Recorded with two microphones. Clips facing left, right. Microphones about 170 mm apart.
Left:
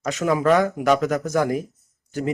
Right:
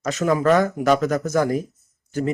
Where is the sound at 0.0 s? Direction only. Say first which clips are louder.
Right 1 dB; 15° left (ahead or behind).